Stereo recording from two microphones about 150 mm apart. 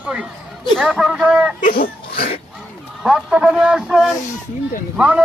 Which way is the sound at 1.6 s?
65° left (ahead or behind).